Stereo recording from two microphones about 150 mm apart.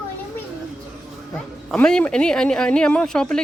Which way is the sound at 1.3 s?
5° left (ahead or behind).